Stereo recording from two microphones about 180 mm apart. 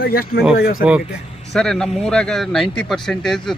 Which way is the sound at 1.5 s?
5° left (ahead or behind).